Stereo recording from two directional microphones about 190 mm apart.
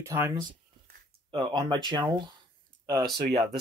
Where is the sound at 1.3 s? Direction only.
25° right (ahead or behind).